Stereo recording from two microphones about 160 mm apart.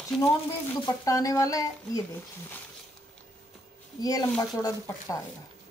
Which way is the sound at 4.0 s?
25° left (ahead or behind).